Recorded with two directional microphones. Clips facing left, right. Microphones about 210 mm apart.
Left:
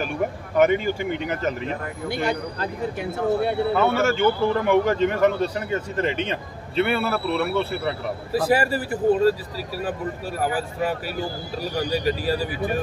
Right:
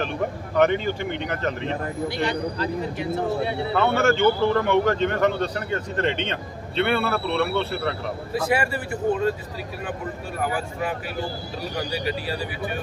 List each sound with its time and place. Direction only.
0.6 s a man's voice: 10° left (ahead or behind)
2.0 s speech: 50° left (ahead or behind)
3.7 s a man's voice: 5° left (ahead or behind)
8.4 s speech: 35° left (ahead or behind)
10.4 s speech: 35° left (ahead or behind)